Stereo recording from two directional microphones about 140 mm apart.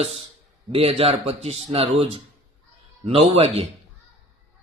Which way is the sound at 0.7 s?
45° right (ahead or behind).